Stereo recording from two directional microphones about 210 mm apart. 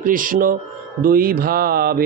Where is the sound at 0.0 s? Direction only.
40° right (ahead or behind).